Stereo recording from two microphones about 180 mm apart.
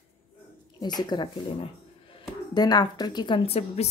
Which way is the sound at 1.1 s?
25° left (ahead or behind).